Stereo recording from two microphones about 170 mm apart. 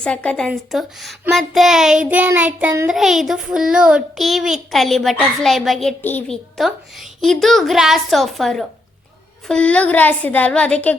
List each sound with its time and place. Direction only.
0.0 s child singing: 5° left (ahead or behind)
9.5 s a woman's voice: 5° left (ahead or behind)